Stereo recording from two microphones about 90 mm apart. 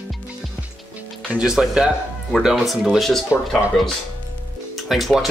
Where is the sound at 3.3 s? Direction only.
35° left (ahead or behind).